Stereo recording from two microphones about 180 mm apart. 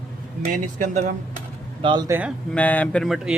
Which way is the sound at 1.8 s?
20° right (ahead or behind).